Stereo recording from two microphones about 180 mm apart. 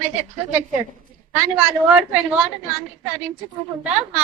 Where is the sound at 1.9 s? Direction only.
5° right (ahead or behind).